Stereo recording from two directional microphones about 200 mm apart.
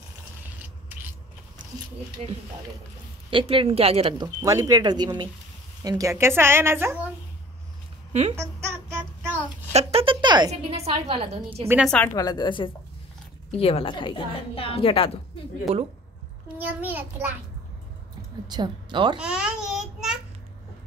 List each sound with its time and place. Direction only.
2.2 s speech: 30° right (ahead or behind)
4.4 s speech: 15° right (ahead or behind)
8.1 s speech: 35° right (ahead or behind)
8.4 s child singing: 10° right (ahead or behind)
9.7 s a woman's voice: 30° right (ahead or behind)
11.6 s speech: 10° right (ahead or behind)
11.9 s a woman's voice: 10° left (ahead or behind); by 15.1 s 25° left (ahead or behind)
16.5 s speech: 10° right (ahead or behind)
18.5 s speech: 20° right (ahead or behind)
19.1 s a child's voice: 5° right (ahead or behind)